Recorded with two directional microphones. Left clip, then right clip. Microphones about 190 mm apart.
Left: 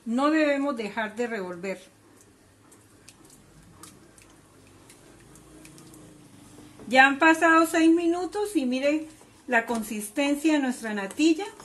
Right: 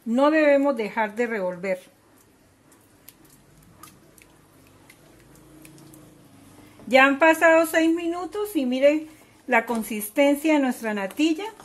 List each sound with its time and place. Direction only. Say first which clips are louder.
0.1 s speech: right 5 dB; 30° right (ahead or behind)
6.9 s speech: right 2 dB; 35° right (ahead or behind)
8.0 s speech: left 1 dB; 25° right (ahead or behind)